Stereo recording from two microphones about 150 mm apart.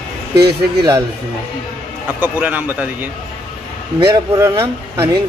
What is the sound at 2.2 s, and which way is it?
Speech, 10° right (ahead or behind).